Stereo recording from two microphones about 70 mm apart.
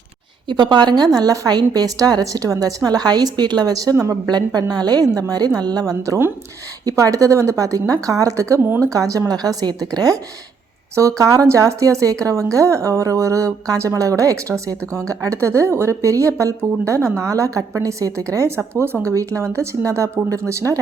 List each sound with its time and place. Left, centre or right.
0.4 s a woman's voice: right
3.9 s a woman's voice: right
4.3 s a woman's voice: right
4.7 s a woman's voice: right
5.8 s a woman's voice: right
10.9 s a woman's voice: right
18.3 s a woman's voice: right